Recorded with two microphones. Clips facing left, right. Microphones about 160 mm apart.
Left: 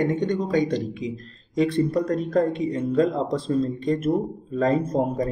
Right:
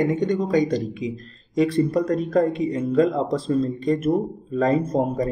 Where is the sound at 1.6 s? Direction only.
40° right (ahead or behind).